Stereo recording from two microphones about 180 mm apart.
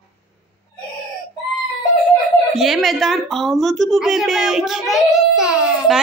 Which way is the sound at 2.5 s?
Centre (ahead or behind).